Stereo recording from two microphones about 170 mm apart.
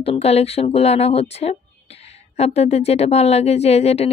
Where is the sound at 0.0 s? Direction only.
35° left (ahead or behind).